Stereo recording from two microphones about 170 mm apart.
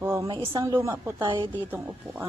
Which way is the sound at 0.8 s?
15° right (ahead or behind).